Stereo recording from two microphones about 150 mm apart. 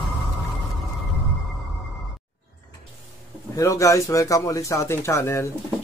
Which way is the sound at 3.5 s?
20° left (ahead or behind).